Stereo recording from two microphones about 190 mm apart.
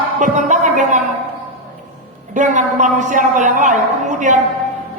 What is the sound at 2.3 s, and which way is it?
A man's voice, 40° right (ahead or behind).